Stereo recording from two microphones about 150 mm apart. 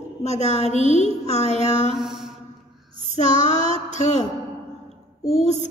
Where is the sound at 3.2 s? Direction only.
50° left (ahead or behind).